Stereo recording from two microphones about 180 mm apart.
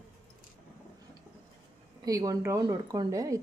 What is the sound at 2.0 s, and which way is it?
A woman's voice, 20° right (ahead or behind).